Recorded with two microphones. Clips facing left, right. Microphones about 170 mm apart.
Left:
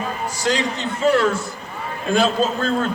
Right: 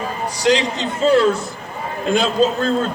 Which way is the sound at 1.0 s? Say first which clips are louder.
Right 3 dB; 20° right (ahead or behind).